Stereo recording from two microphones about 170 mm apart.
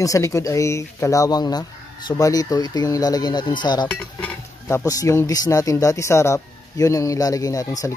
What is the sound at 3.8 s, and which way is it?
Speech, 10° left (ahead or behind).